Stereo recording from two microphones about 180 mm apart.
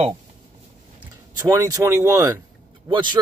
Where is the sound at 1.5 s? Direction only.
20° right (ahead or behind).